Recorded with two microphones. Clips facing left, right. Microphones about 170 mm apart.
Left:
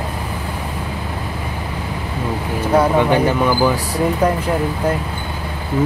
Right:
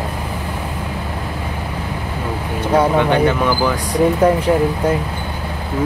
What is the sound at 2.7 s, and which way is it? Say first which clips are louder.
Speech: even; 5° left (ahead or behind).